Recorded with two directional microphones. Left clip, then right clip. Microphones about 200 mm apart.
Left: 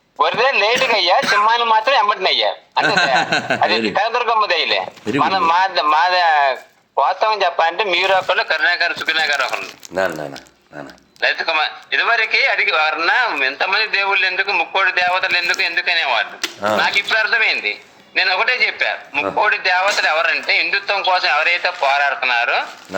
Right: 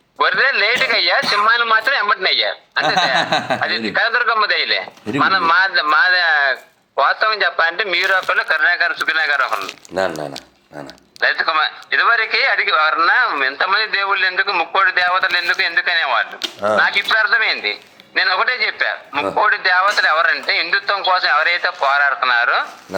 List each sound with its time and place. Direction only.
0.2 s a man's voice: centre (ahead or behind)
9.9 s speech: 10° right (ahead or behind)
11.2 s a man's voice: centre (ahead or behind)